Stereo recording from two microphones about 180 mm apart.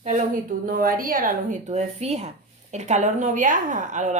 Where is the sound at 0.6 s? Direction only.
50° right (ahead or behind).